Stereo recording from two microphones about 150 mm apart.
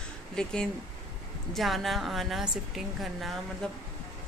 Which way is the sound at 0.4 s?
5° left (ahead or behind).